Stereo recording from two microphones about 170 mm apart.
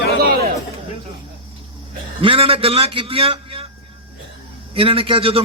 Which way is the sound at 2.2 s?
30° right (ahead or behind).